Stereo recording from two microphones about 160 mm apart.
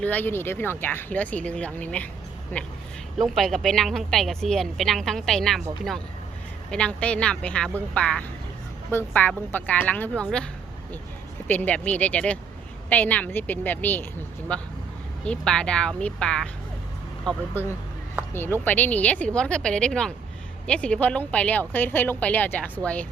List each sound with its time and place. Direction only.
0.0 s a woman's voice: 10° left (ahead or behind)
6.7 s speech: 5° left (ahead or behind)
11.4 s a woman's voice: 10° left (ahead or behind)